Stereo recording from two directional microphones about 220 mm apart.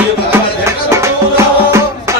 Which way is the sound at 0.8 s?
15° right (ahead or behind).